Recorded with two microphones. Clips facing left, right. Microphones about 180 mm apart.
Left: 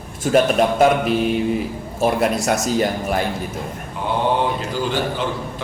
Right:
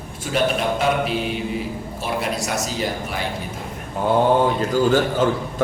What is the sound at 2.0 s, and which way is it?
A man's voice, 50° left (ahead or behind).